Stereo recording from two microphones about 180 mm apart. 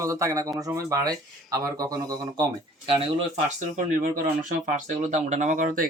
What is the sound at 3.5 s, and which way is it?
Speech, 50° right (ahead or behind).